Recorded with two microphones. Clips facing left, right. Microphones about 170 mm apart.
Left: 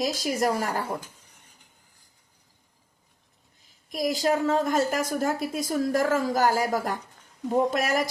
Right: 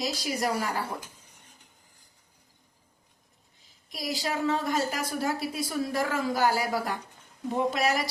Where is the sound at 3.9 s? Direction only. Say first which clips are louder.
Left 7 dB; 45° left (ahead or behind).